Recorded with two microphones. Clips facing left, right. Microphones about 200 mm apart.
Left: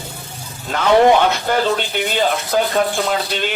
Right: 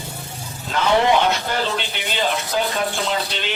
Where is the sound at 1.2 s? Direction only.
50° left (ahead or behind).